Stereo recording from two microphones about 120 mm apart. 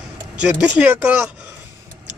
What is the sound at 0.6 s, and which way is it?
Speech, 10° right (ahead or behind).